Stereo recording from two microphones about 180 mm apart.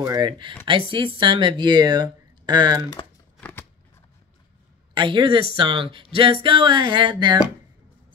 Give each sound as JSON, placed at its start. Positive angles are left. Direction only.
{"t": 0.0, "sound": "speech", "side_deg": -20}
{"t": 3.3, "sound": "a sound", "side_deg": 10}
{"t": 4.9, "sound": "speech", "side_deg": -25}